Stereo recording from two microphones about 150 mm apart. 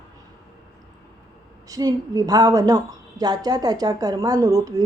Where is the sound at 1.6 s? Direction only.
25° right (ahead or behind).